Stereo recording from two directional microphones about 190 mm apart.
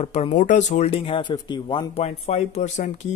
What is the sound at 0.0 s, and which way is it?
Speech, 35° left (ahead or behind).